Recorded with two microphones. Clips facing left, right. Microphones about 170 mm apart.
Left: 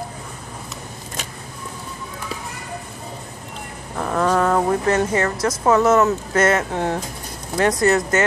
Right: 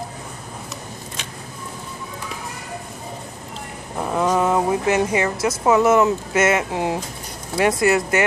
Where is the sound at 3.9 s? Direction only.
15° right (ahead or behind).